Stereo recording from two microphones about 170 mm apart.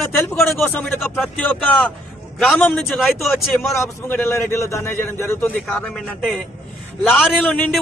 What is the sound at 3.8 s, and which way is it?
A man's voice, 15° left (ahead or behind).